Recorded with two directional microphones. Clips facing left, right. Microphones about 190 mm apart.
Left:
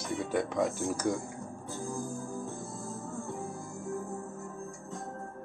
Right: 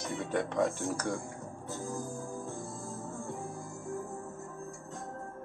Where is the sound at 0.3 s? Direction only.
5° left (ahead or behind).